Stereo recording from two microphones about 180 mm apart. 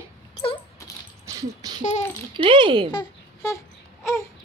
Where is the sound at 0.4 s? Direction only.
30° left (ahead or behind).